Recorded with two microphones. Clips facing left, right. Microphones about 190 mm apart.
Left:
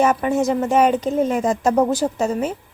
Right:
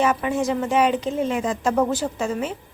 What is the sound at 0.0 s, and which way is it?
Speech, 45° left (ahead or behind).